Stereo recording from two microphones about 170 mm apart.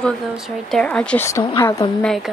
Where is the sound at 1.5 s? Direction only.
20° left (ahead or behind).